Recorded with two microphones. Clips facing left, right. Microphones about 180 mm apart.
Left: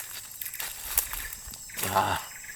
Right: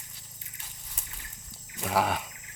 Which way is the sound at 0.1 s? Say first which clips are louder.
Even; 75° left (ahead or behind).